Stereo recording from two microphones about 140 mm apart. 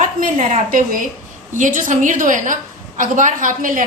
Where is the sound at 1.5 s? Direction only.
65° right (ahead or behind).